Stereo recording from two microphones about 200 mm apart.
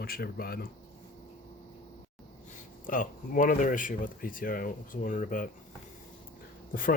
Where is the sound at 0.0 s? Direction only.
50° left (ahead or behind).